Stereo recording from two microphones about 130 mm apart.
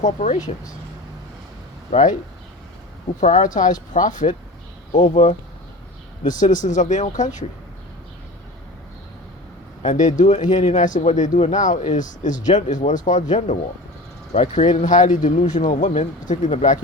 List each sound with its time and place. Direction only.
0.0 s speech: 70° left (ahead or behind)
1.9 s speech: 75° left (ahead or behind)
3.2 s speech: 70° left (ahead or behind)
6.2 s speech: 85° left
9.8 s speech: 75° left (ahead or behind)
15.9 s speech: 65° left (ahead or behind)